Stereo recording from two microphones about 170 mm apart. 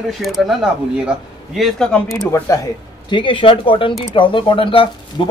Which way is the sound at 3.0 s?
30° left (ahead or behind).